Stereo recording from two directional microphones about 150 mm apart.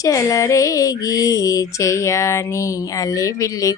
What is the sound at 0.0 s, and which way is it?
Speech, 20° left (ahead or behind).